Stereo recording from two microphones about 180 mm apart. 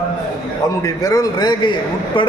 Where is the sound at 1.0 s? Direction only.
20° left (ahead or behind).